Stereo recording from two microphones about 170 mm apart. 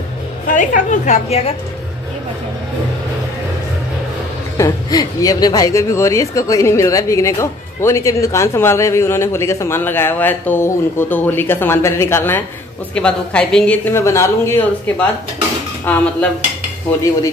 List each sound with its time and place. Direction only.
0.5 s a woman's voice: 50° left (ahead or behind)
4.6 s speech: 20° left (ahead or behind)